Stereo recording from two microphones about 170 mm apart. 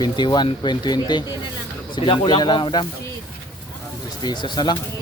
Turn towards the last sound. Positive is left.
turn(degrees=25)  # may be behind; listen again after turning